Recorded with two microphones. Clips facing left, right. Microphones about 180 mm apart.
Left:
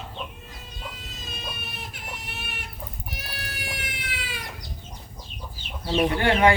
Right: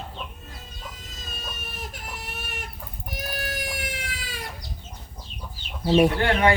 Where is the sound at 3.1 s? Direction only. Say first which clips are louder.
Right 10 dB; 45° right (ahead or behind).